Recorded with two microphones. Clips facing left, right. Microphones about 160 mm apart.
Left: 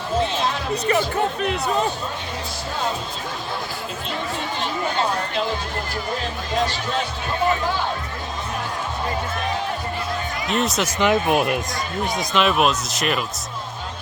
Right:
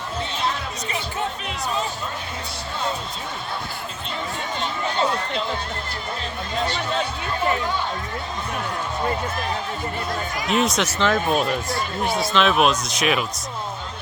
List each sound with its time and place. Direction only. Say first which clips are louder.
0.7 s speech: left 9 dB; 55° left (ahead or behind)
10.5 s speech: right 1 dB; centre (ahead or behind)
10.9 s speech: left 4 dB; 15° left (ahead or behind)
12.3 s speech: even; 5° left (ahead or behind)